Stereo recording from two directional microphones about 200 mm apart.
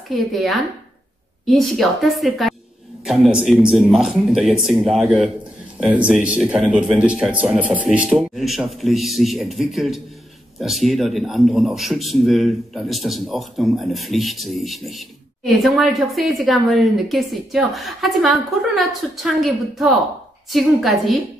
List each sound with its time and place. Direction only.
0.1 s a man's voice: centre (ahead or behind)